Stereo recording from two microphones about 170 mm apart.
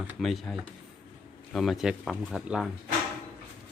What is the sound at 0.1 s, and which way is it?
Speech, centre (ahead or behind).